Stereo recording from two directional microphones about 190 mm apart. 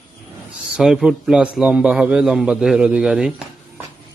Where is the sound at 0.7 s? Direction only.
5° right (ahead or behind).